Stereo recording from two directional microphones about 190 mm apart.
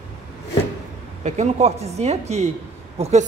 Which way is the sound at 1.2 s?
35° right (ahead or behind).